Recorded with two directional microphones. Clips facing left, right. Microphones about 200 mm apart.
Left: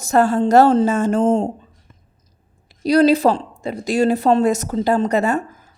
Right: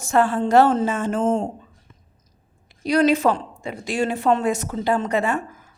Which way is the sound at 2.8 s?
35° left (ahead or behind).